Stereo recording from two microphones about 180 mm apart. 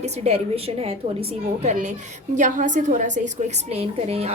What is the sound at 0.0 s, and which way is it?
A woman's voice, 35° right (ahead or behind).